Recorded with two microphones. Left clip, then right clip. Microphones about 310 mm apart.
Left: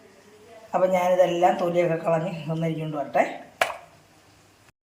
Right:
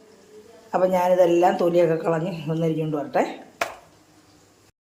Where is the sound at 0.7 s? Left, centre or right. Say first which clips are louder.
Right 2 dB; centre.